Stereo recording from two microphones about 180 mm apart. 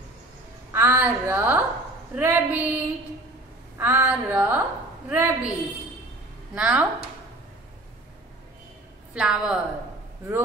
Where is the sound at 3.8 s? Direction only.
10° right (ahead or behind).